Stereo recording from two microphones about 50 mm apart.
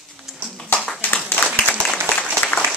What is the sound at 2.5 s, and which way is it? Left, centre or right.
Applause, left.